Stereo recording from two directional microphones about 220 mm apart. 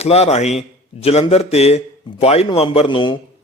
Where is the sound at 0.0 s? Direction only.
30° left (ahead or behind).